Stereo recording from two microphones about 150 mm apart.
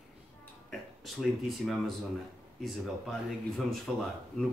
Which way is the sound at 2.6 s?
Centre (ahead or behind).